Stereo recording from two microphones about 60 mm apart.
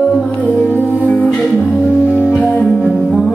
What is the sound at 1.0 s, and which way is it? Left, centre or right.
Music, centre.